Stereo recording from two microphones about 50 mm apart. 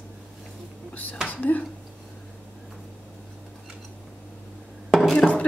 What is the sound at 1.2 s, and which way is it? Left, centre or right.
Speech, left.